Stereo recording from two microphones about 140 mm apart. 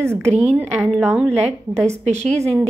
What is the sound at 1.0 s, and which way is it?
Speech, 10° right (ahead or behind).